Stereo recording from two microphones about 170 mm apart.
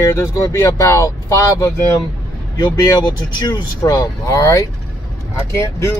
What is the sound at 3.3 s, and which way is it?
Speech, 25° left (ahead or behind).